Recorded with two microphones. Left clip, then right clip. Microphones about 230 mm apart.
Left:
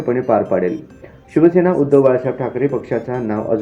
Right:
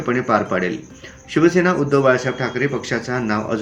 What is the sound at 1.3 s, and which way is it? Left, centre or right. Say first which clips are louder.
Speech: left 3 dB; right.